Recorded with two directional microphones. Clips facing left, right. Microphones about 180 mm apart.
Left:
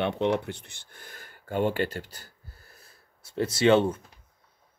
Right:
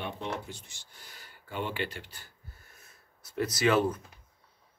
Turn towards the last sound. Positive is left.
turn(degrees=25)  # may be behind; listen again after turning